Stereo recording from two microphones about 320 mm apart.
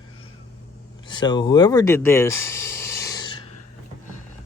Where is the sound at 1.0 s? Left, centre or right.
Centre.